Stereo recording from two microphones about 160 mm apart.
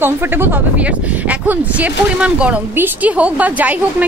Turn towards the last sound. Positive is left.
turn(degrees=-10)  # may be behind; listen again after turning